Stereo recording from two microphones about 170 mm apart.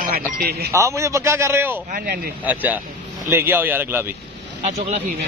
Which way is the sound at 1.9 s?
60° right (ahead or behind).